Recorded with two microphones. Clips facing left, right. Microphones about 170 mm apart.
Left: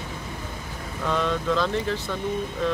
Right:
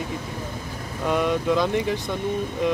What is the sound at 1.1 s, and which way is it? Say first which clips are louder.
Speech: right 3 dB; 10° right (ahead or behind).